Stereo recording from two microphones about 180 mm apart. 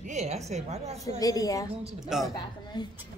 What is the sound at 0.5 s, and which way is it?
Speech, 35° right (ahead or behind).